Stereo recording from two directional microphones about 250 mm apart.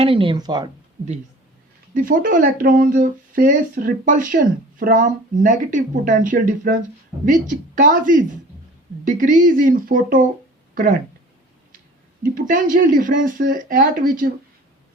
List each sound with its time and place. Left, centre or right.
0.0 s speech: right
1.9 s speech: right
7.8 s speech: right
12.2 s speech: right